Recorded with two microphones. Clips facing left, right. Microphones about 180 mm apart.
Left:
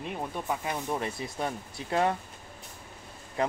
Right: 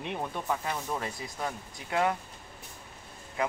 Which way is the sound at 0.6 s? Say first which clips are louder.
Left 2 dB; 25° left (ahead or behind).